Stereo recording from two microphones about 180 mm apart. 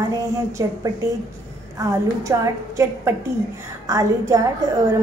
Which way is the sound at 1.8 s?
15° right (ahead or behind).